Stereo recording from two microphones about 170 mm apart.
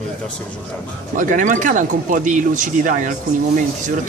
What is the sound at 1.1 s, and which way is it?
Speech, 50° right (ahead or behind).